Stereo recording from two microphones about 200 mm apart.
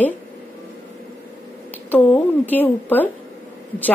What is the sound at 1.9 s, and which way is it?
A woman's voice, 10° left (ahead or behind).